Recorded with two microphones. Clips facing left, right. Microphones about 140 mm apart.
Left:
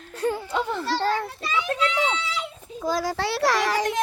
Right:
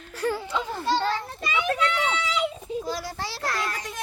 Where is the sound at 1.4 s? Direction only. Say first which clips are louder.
Left 1 dB; 60° right (ahead or behind).